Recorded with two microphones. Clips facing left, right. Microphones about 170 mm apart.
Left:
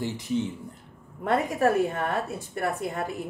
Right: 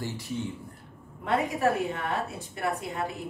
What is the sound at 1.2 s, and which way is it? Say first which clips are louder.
A woman's voice: left 2 dB; 50° left (ahead or behind).